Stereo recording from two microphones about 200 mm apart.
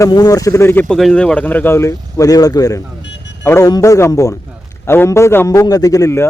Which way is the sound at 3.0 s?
60° left (ahead or behind).